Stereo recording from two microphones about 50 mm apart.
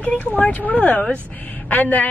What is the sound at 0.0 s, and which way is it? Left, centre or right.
A woman's voice, left.